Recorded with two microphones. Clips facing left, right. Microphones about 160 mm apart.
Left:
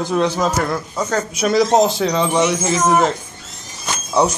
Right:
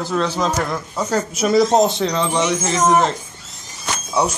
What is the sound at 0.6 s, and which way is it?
Speech, 5° left (ahead or behind).